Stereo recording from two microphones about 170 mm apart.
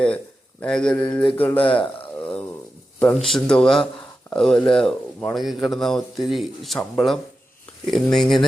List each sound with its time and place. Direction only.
0.6 s speech: 5° left (ahead or behind)
1.1 s mantra: 10° left (ahead or behind)
1.5 s speech: 30° left (ahead or behind)
3.0 s speech: 5° left (ahead or behind)